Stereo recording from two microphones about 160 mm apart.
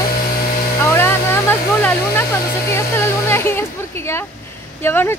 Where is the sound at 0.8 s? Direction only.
15° left (ahead or behind).